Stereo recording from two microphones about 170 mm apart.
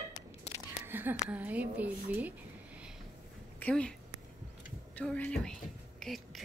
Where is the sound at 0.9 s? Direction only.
10° right (ahead or behind).